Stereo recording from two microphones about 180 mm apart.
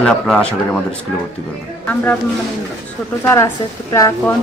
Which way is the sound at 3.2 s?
15° left (ahead or behind).